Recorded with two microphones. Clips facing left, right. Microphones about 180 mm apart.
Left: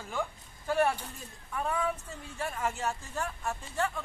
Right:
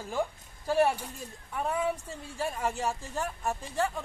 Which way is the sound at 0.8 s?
10° right (ahead or behind).